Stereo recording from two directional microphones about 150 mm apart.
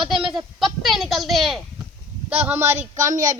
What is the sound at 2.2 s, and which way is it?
Speech, 10° right (ahead or behind).